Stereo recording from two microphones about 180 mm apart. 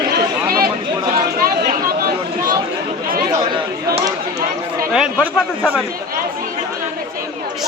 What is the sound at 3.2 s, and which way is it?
Chatter, 25° right (ahead or behind).